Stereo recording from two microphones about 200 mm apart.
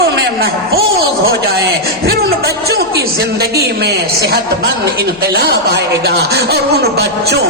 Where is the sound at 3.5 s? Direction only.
50° right (ahead or behind).